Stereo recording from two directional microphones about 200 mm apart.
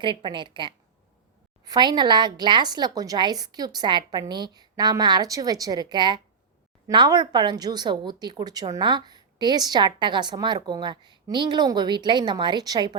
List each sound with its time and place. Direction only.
0.0 s speech: 25° right (ahead or behind)